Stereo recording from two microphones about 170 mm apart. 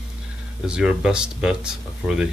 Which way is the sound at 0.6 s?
5° right (ahead or behind).